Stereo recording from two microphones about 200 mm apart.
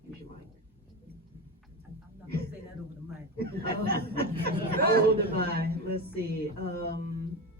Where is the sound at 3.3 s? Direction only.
50° right (ahead or behind).